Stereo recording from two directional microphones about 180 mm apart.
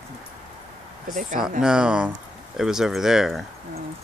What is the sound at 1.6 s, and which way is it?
Speech, 5° right (ahead or behind).